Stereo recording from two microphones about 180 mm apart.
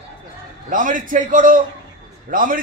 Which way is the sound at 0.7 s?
45° right (ahead or behind).